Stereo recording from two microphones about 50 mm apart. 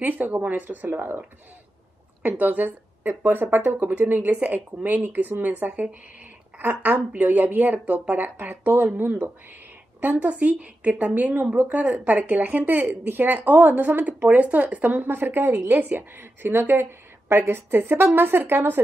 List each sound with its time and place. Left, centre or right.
0.0 s a woman's voice: right
2.2 s a woman's voice: right
6.6 s a woman's voice: right
15.8 s a woman's voice: right